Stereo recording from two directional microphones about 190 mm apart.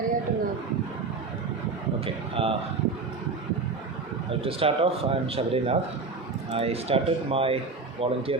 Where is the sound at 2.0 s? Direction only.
30° right (ahead or behind).